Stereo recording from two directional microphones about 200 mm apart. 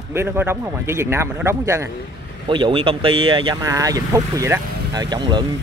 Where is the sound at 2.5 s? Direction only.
25° right (ahead or behind).